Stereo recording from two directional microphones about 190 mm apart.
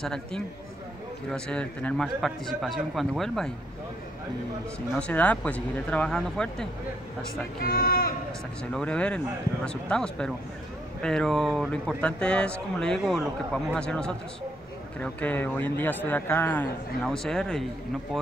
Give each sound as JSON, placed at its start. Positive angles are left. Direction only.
{"t": 0.0, "sound": "speech", "side_deg": 5}
{"t": 4.9, "sound": "speech", "side_deg": 5}
{"t": 7.6, "sound": "speech", "side_deg": 50}
{"t": 8.7, "sound": "a man's voice", "side_deg": 5}